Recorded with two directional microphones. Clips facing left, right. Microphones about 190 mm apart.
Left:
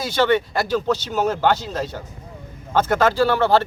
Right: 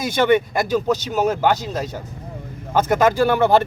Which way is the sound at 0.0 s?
15° right (ahead or behind).